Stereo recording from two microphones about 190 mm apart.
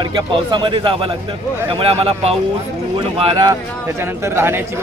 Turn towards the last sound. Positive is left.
turn(degrees=-10)  # may be behind; listen again after turning